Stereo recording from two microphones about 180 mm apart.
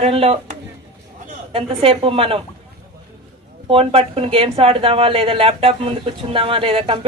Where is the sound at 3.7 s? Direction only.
30° right (ahead or behind).